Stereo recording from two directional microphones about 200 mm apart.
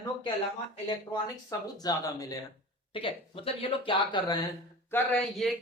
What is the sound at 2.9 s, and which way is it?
Speech, 25° left (ahead or behind).